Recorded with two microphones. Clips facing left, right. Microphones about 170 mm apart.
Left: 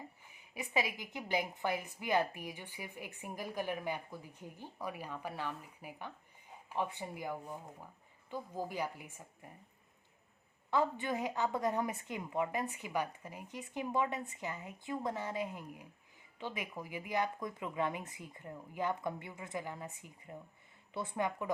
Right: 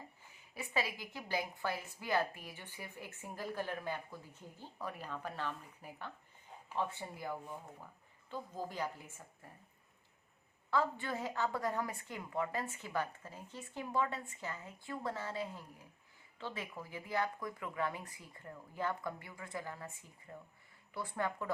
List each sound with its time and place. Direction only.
0.3 s a woman's voice: 15° left (ahead or behind)
10.7 s a woman's voice: 20° left (ahead or behind)